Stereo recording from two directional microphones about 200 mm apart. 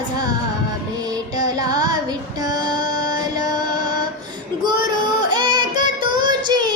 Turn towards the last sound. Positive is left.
turn(degrees=-20)  # may be behind; listen again after turning